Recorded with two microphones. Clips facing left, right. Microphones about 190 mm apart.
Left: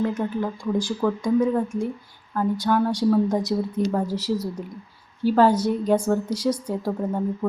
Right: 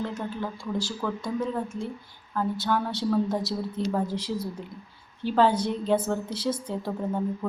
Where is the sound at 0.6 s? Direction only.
15° left (ahead or behind).